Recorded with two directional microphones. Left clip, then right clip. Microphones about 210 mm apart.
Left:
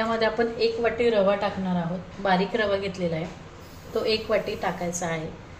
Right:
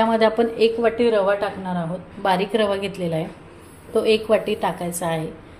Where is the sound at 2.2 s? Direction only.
40° right (ahead or behind).